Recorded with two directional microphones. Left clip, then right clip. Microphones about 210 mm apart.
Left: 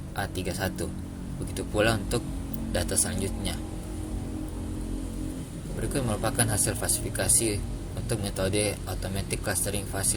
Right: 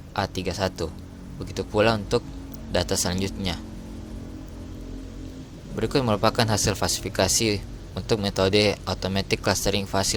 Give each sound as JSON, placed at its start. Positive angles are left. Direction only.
{"t": 0.2, "sound": "speech", "side_deg": -40}
{"t": 5.8, "sound": "speech", "side_deg": -45}